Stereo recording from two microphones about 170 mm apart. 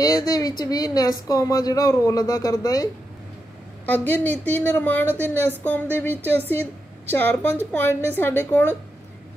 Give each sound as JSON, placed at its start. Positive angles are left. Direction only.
{"t": 0.0, "sound": "a woman's voice", "side_deg": 20}
{"t": 3.8, "sound": "a woman's voice", "side_deg": 10}